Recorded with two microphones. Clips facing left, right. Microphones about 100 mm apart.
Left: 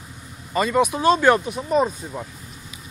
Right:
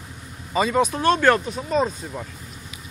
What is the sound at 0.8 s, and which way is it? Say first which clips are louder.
Speech: left 2 dB; 15° left (ahead or behind).